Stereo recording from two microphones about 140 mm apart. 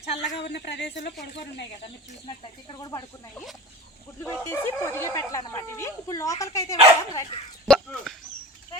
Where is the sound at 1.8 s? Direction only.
35° left (ahead or behind).